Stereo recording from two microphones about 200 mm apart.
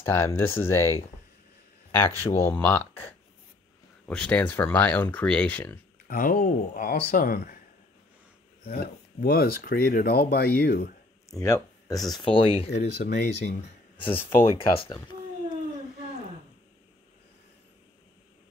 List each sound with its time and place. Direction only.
0.0 s speech: 10° left (ahead or behind)
6.0 s speech: 45° left (ahead or behind)
8.6 s speech: 50° left (ahead or behind)
11.2 s speech: 15° left (ahead or behind)
12.7 s speech: 55° left (ahead or behind)
13.6 s a sound: 25° left (ahead or behind)